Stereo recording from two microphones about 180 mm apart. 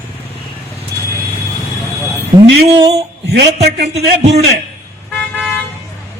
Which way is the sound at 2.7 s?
30° right (ahead or behind).